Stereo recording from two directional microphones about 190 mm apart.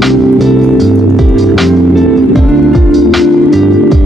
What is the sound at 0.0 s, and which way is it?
Music, centre (ahead or behind).